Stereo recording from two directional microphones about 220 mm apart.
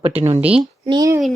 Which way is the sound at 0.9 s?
15° right (ahead or behind).